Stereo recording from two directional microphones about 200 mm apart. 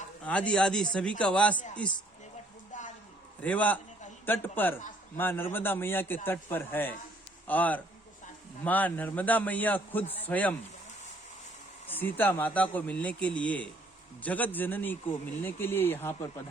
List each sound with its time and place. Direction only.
0.3 s a man's voice: 5° left (ahead or behind)
2.7 s a sound: 40° left (ahead or behind)
3.4 s speech: 5° left (ahead or behind)
11.9 s speech: 10° left (ahead or behind)